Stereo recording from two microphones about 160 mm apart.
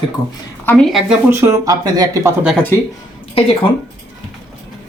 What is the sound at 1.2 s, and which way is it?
Speech, 15° right (ahead or behind).